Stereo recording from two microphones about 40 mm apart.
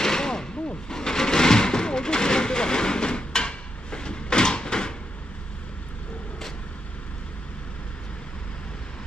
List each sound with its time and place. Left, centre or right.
0.0 s vehicle: centre